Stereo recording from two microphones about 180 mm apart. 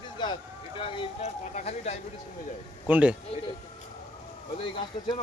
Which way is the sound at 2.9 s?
10° right (ahead or behind).